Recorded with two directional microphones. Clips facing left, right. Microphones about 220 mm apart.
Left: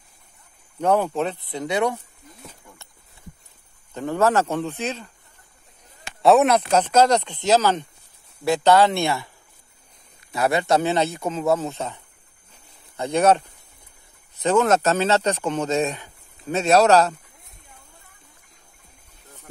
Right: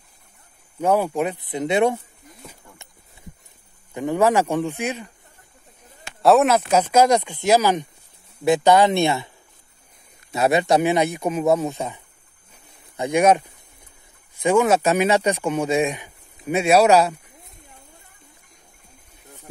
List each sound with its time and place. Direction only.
0.7 s speech: 10° right (ahead or behind)
3.9 s speech: 15° right (ahead or behind)
6.2 s speech: centre (ahead or behind); by 9.3 s 20° right (ahead or behind)
10.3 s speech: 20° right (ahead or behind)